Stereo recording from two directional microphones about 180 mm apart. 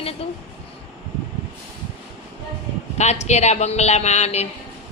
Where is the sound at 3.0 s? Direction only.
40° left (ahead or behind).